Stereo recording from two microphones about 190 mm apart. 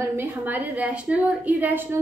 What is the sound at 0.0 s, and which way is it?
A woman's voice, 15° right (ahead or behind).